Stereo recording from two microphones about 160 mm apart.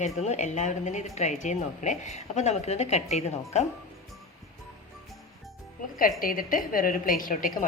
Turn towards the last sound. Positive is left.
turn(degrees=60)  # may be behind; listen again after turning